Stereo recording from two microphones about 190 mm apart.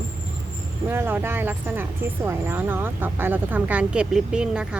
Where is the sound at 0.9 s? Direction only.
10° right (ahead or behind).